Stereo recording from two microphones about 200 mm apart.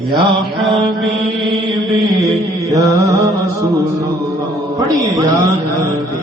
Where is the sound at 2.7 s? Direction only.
15° right (ahead or behind).